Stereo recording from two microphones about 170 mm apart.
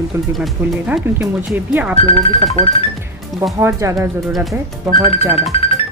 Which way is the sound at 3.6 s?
15° right (ahead or behind).